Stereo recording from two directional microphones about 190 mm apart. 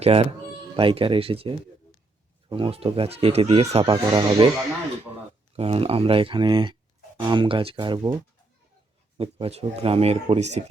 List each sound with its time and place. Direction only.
0.0 s speech: 30° right (ahead or behind)
5.5 s speech: 30° right (ahead or behind)
9.1 s speech: 30° right (ahead or behind)